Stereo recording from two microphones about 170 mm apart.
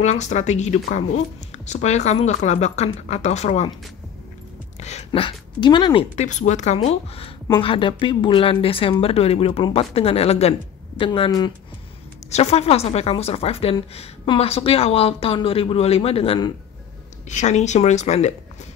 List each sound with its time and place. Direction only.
0.0 s a woman's voice: 45° left (ahead or behind)
4.7 s a sound: 40° left (ahead or behind)
6.1 s a woman's voice: 45° left (ahead or behind)
17.3 s speech: 45° left (ahead or behind)